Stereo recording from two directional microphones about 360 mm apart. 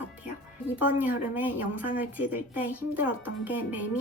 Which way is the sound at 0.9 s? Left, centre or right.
Centre.